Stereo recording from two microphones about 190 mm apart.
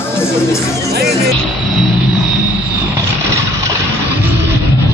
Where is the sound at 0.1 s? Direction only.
15° left (ahead or behind).